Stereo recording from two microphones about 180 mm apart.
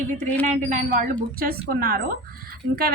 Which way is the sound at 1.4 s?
55° right (ahead or behind).